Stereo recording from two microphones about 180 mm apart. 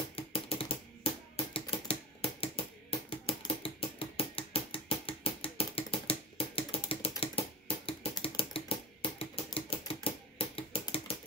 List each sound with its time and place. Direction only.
0.1 s typewriter: 30° left (ahead or behind)
5.8 s typing: 30° left (ahead or behind)
9.2 s typewriter: 30° left (ahead or behind)